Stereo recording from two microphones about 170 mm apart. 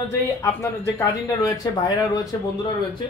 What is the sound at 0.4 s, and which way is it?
Speech, 15° left (ahead or behind).